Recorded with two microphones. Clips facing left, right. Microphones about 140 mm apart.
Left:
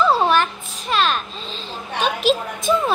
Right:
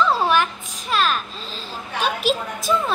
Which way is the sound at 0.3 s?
10° right (ahead or behind).